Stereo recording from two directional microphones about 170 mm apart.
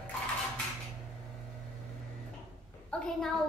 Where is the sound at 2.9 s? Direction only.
5° left (ahead or behind).